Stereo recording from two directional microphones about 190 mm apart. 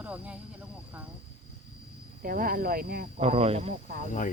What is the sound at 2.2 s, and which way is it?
Speech, 50° right (ahead or behind).